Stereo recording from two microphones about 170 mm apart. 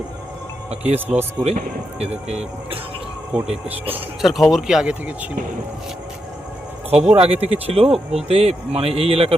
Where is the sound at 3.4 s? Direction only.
35° right (ahead or behind).